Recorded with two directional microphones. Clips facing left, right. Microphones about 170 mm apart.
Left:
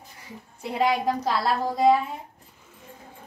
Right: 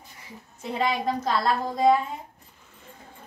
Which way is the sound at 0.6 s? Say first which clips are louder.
Left 3 dB; 10° left (ahead or behind).